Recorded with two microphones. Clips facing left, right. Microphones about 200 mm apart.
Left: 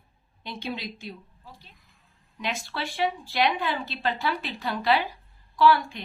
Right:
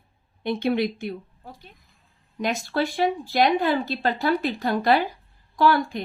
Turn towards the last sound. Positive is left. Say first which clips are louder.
# right 1 dB
turn(degrees=-45)  # may be behind; listen again after turning